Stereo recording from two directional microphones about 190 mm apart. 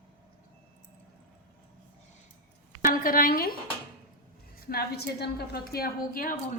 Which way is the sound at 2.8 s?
45° left (ahead or behind).